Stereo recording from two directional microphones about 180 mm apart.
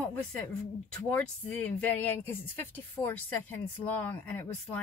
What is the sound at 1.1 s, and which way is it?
Speech, 10° left (ahead or behind).